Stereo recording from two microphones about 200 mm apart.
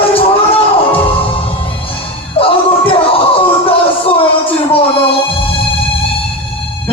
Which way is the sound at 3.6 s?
25° left (ahead or behind).